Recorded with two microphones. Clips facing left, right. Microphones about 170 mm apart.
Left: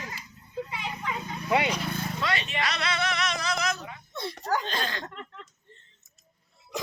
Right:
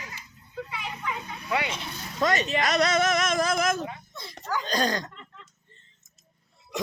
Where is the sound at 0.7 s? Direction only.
25° left (ahead or behind).